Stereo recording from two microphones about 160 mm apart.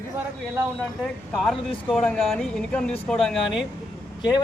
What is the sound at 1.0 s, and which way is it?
Speech, centre (ahead or behind).